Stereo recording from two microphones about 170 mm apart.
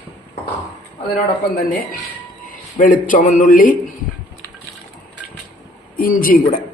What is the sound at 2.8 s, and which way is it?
Speech, 50° left (ahead or behind).